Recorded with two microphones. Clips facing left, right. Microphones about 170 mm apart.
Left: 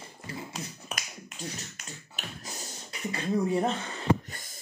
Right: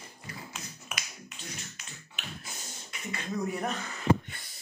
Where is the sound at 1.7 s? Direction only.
40° left (ahead or behind).